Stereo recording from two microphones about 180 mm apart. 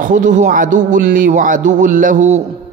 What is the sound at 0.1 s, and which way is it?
A man's voice, 45° right (ahead or behind).